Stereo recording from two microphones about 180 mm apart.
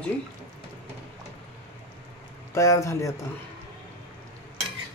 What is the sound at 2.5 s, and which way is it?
Speech, 15° left (ahead or behind).